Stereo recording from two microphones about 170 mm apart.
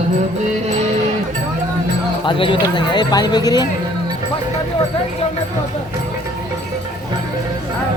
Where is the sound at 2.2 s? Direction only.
30° left (ahead or behind).